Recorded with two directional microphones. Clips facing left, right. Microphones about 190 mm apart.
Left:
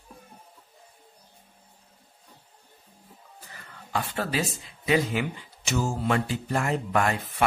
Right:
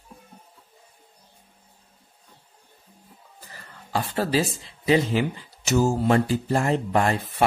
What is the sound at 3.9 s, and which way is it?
Speech, 35° right (ahead or behind).